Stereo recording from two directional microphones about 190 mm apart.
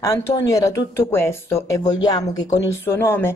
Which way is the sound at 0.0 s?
15° left (ahead or behind).